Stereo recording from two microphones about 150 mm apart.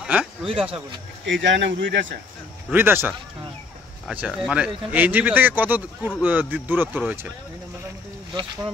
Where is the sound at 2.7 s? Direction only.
15° right (ahead or behind).